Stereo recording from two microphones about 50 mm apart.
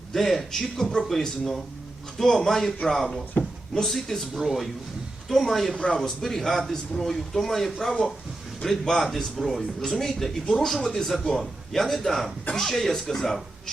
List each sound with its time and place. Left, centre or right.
0.1 s a man's voice: centre
5.7 s a man's voice: left
6.0 s a man's voice: centre